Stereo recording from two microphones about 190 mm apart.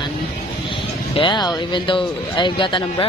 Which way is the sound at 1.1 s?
25° left (ahead or behind).